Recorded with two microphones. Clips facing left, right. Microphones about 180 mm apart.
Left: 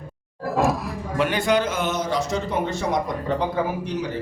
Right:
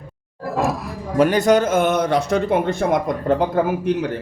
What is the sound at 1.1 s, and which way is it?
A man's voice, 40° right (ahead or behind).